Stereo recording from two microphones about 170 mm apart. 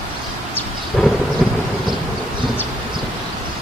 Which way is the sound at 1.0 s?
Centre (ahead or behind).